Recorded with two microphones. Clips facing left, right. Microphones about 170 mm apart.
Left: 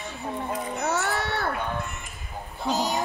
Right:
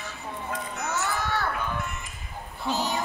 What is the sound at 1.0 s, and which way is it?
Children playing, 60° left (ahead or behind).